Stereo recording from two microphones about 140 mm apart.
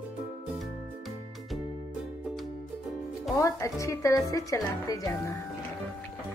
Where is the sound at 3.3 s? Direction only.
20° left (ahead or behind).